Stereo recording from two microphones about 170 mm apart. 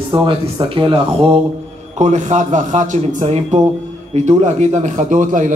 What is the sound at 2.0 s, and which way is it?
A man's voice, 45° right (ahead or behind).